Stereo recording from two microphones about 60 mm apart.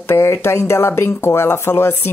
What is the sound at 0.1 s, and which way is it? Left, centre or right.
Speech, left.